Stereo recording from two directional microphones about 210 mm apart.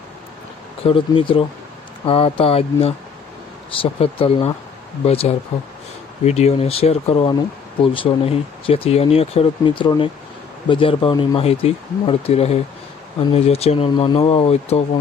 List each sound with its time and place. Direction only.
0.8 s speech: 25° left (ahead or behind)